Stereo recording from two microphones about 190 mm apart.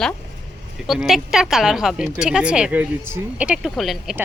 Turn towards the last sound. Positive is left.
turn(degrees=0)  # may be behind; listen again after turning